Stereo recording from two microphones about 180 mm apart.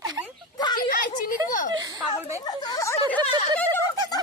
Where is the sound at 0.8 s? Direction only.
50° left (ahead or behind).